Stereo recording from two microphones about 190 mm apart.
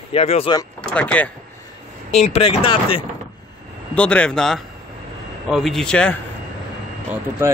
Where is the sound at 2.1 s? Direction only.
35° left (ahead or behind).